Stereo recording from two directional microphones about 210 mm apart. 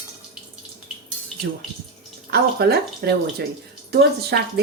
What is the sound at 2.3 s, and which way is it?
A woman's voice, 50° right (ahead or behind).